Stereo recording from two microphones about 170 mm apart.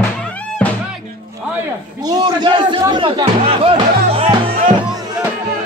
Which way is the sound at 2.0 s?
25° right (ahead or behind).